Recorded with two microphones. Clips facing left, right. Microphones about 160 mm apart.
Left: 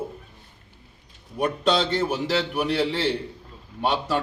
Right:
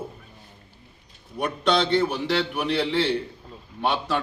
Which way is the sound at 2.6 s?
5° left (ahead or behind).